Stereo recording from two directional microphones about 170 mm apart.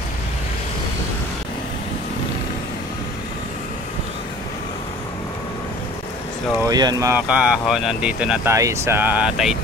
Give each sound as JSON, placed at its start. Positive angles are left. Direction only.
{"t": 6.6, "sound": "speech", "side_deg": -25}
{"t": 7.2, "sound": "speech", "side_deg": -5}